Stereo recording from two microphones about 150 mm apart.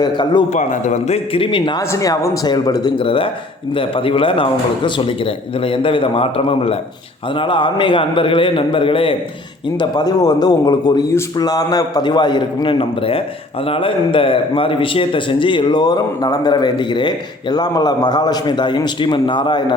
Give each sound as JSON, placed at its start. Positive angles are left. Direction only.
{"t": 0.0, "sound": "a man's voice", "side_deg": 30}
{"t": 0.5, "sound": "a man's voice", "side_deg": 55}
{"t": 1.8, "sound": "a man's voice", "side_deg": 20}
{"t": 9.7, "sound": "a man's voice", "side_deg": 25}